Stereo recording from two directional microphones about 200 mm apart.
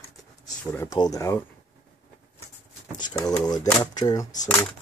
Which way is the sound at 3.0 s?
20° left (ahead or behind).